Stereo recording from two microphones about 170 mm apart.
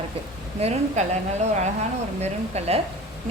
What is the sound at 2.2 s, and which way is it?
Speech, 40° right (ahead or behind).